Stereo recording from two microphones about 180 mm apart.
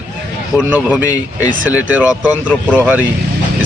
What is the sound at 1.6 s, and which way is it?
Speech, 10° right (ahead or behind).